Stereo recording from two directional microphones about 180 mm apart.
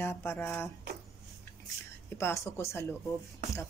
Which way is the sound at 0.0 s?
15° left (ahead or behind).